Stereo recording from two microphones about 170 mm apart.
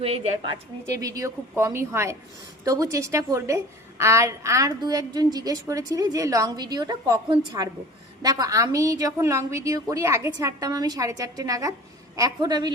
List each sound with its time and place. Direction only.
0.0 s a woman's voice: 35° right (ahead or behind)
0.9 s a woman's voice: 20° right (ahead or behind)